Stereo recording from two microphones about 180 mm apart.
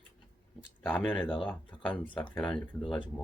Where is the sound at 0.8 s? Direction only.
5° left (ahead or behind).